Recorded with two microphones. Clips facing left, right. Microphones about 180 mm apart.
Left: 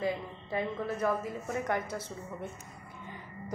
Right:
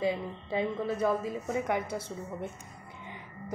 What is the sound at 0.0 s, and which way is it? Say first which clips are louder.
A woman's voice: right 3 dB; 15° right (ahead or behind).